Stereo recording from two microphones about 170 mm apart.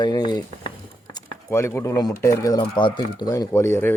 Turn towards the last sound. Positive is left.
turn(degrees=15)  # may be behind; listen again after turning